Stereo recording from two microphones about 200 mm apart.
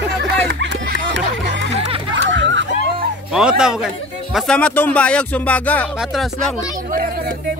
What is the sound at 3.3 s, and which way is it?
A man's voice, 5° right (ahead or behind).